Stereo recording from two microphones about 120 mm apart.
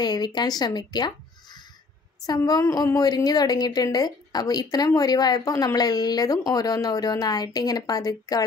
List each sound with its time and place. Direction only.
0.0 s a woman's voice: 35° left (ahead or behind)